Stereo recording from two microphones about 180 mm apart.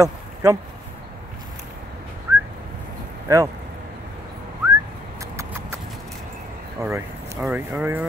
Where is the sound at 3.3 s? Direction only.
15° right (ahead or behind).